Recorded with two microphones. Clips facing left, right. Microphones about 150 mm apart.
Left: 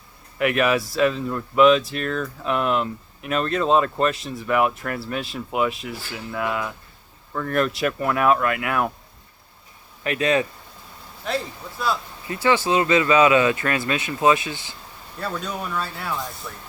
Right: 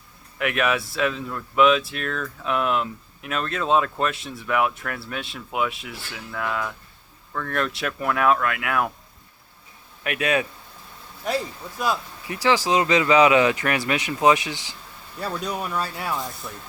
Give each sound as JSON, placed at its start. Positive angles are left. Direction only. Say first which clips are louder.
{"t": 0.3, "sound": "speech", "louder": "left 3 dB", "side_deg": 0}
{"t": 10.0, "sound": "speech", "louder": "left 2 dB", "side_deg": -10}
{"t": 11.8, "sound": "speech", "louder": "even", "side_deg": -15}